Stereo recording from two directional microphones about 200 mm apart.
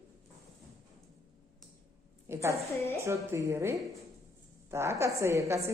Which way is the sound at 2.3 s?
15° right (ahead or behind).